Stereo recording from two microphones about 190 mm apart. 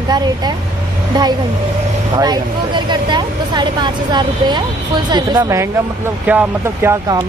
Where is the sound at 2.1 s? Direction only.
20° right (ahead or behind).